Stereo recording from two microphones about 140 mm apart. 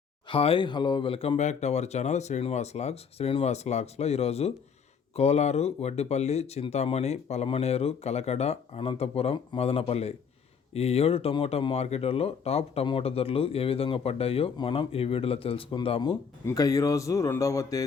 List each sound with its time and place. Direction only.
0.3 s speech: 40° left (ahead or behind)
16.5 s a man's voice: 25° left (ahead or behind)